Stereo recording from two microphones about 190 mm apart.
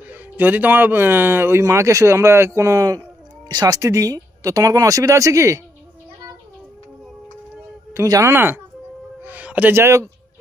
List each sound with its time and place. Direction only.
0.1 s speech: 10° right (ahead or behind)
7.9 s a man's voice: 15° right (ahead or behind)